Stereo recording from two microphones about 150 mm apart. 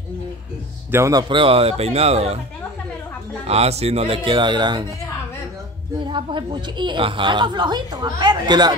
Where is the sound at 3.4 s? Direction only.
45° right (ahead or behind).